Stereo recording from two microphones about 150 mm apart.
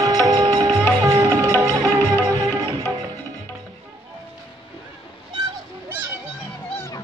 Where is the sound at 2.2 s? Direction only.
30° right (ahead or behind).